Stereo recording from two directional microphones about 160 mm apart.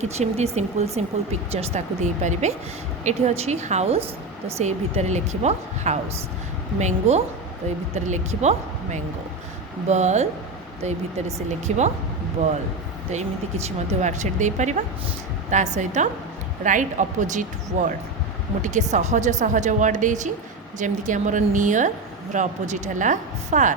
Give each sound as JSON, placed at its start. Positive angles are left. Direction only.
{"t": 0.0, "sound": "a woman's voice", "side_deg": -45}
{"t": 13.7, "sound": "a woman's voice", "side_deg": -45}